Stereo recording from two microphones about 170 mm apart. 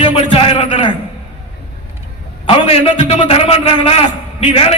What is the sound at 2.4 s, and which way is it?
A man's voice, 35° left (ahead or behind).